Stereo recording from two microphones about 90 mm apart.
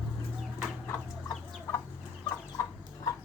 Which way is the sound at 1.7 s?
30° left (ahead or behind).